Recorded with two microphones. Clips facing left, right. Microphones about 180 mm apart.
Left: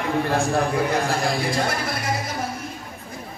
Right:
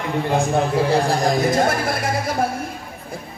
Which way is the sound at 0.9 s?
35° right (ahead or behind).